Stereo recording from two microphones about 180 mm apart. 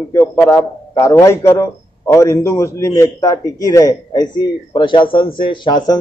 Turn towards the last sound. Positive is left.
turn(degrees=20)  # may be behind; listen again after turning